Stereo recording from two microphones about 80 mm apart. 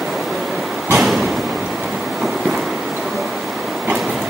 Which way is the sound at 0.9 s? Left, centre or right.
Centre.